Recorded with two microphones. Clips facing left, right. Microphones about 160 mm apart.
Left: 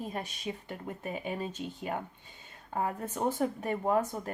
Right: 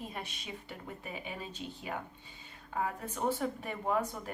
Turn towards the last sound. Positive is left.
turn(degrees=45)  # may be behind; listen again after turning